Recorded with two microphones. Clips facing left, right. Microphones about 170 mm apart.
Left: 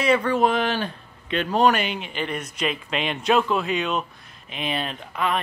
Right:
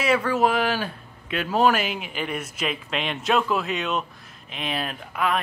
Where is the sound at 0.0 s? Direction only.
5° right (ahead or behind).